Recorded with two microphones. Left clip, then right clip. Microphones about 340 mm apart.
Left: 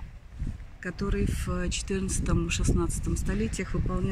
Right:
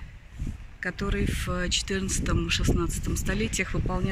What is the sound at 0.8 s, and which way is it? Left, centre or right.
Speech, centre.